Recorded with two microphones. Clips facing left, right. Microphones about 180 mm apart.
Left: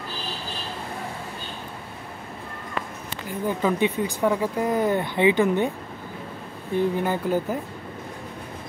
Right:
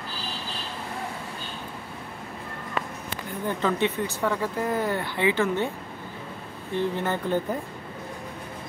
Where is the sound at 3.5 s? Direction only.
10° left (ahead or behind).